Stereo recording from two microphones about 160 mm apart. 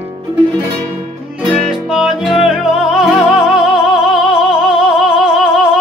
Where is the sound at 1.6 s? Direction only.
Centre (ahead or behind).